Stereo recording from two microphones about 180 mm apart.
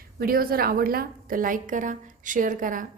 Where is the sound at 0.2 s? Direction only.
55° right (ahead or behind).